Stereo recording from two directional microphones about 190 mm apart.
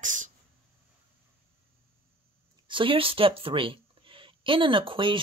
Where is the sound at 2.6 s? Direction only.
25° right (ahead or behind).